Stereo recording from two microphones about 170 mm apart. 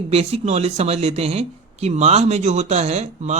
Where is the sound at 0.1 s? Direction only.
35° right (ahead or behind).